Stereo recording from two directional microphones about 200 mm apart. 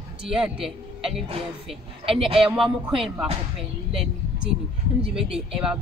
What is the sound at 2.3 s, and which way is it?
Speech, centre (ahead or behind).